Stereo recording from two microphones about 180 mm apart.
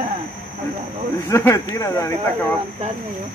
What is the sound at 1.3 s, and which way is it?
Speech, 15° left (ahead or behind).